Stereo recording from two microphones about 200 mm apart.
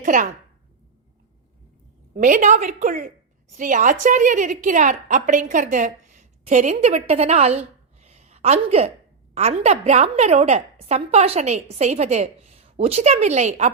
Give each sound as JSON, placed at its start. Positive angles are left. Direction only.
{"t": 0.0, "sound": "a woman's voice", "side_deg": -40}
{"t": 2.1, "sound": "a woman's voice", "side_deg": -40}
{"t": 8.0, "sound": "a sound", "side_deg": -30}
{"t": 9.3, "sound": "a woman's voice", "side_deg": -30}